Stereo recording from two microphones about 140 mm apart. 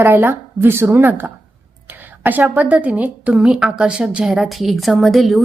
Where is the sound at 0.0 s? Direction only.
15° right (ahead or behind).